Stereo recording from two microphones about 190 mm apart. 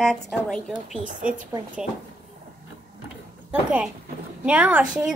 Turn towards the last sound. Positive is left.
turn(degrees=-5)  # may be behind; listen again after turning